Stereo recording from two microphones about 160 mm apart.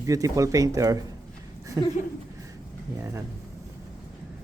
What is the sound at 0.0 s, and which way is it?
Speech, 20° right (ahead or behind).